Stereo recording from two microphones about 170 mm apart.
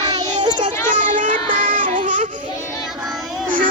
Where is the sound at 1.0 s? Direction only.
50° right (ahead or behind).